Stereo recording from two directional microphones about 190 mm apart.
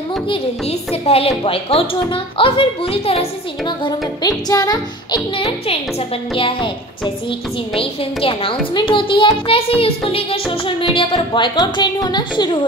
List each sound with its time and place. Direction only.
0.3 s a child's voice: 30° left (ahead or behind)